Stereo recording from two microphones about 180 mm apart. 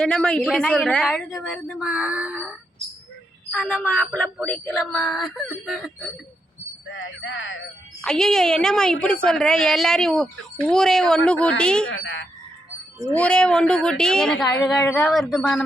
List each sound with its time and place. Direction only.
0.0 s a woman's voice: 5° left (ahead or behind)
6.9 s speech: 90° left
8.0 s a woman's voice: 5° left (ahead or behind)
11.9 s speech: 90° left
13.1 s a woman's voice: 5° left (ahead or behind)